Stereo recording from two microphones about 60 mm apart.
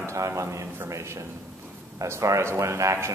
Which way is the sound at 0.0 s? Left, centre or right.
Right.